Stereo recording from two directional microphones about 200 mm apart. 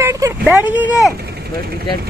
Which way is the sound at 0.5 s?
10° right (ahead or behind).